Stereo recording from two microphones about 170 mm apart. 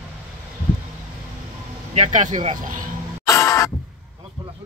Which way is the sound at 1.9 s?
45° right (ahead or behind).